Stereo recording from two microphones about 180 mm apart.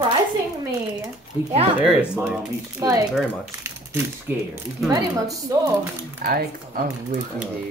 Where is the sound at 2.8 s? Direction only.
20° right (ahead or behind).